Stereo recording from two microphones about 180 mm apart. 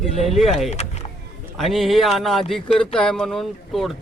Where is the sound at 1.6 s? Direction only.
Centre (ahead or behind).